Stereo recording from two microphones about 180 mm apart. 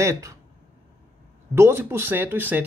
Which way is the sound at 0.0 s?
15° right (ahead or behind).